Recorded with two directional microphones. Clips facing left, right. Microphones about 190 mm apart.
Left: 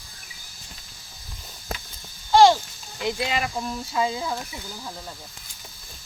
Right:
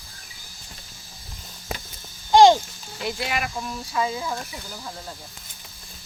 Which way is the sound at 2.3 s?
20° right (ahead or behind).